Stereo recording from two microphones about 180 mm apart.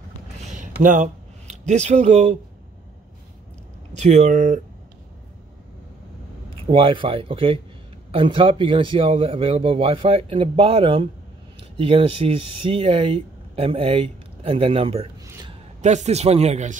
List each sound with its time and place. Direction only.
0.6 s speech: 45° right (ahead or behind)
3.9 s speech: 40° right (ahead or behind)
6.6 s speech: 30° right (ahead or behind)